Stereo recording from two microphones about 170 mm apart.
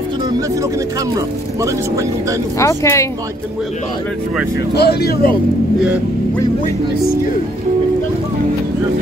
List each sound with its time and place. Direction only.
1.1 s speech: 20° right (ahead or behind)
2.6 s speech: 15° left (ahead or behind)
4.7 s speech: 70° left (ahead or behind)